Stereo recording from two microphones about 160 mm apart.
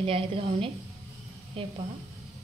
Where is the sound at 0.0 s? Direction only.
35° right (ahead or behind).